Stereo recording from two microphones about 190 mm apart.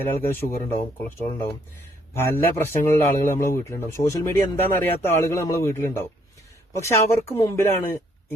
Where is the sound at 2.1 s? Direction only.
10° left (ahead or behind).